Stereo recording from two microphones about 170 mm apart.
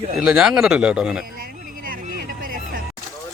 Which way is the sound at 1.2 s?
60° right (ahead or behind).